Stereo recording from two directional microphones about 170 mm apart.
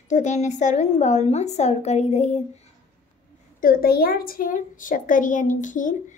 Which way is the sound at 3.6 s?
60° left (ahead or behind).